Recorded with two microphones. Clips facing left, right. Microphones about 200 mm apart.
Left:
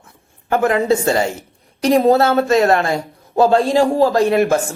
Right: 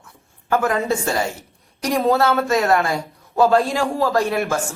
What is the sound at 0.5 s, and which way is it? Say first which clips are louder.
A man's voice: left 4 dB; 25° left (ahead or behind).